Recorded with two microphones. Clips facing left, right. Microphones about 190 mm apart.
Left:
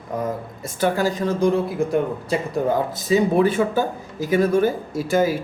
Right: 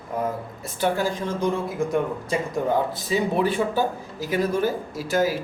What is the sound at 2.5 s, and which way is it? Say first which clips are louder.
Speech: left 1 dB; 45° left (ahead or behind).